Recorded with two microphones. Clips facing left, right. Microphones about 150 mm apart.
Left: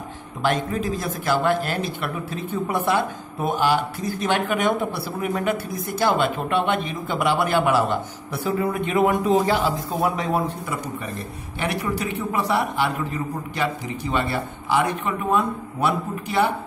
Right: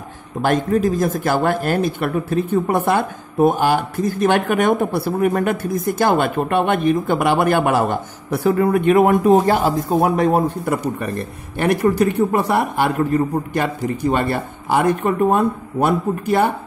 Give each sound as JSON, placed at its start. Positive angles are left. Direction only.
{"t": 0.4, "sound": "speech", "side_deg": -45}